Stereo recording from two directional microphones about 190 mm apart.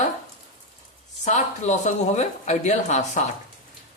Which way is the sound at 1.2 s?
40° left (ahead or behind).